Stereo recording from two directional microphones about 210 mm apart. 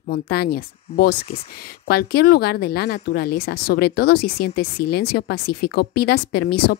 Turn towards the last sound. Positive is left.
turn(degrees=50)  # may be behind; listen again after turning